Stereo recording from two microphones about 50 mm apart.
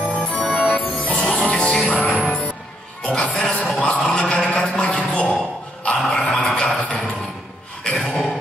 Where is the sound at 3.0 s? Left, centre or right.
Centre.